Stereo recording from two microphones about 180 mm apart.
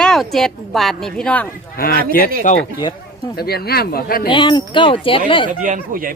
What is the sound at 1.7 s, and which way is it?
Speech, 55° left (ahead or behind).